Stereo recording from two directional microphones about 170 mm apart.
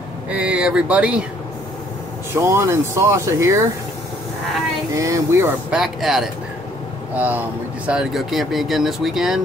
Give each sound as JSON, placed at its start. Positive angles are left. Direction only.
{"t": 0.3, "sound": "speech", "side_deg": -5}
{"t": 2.3, "sound": "speech", "side_deg": -15}
{"t": 4.9, "sound": "speech", "side_deg": -20}
{"t": 5.7, "sound": "speech", "side_deg": 0}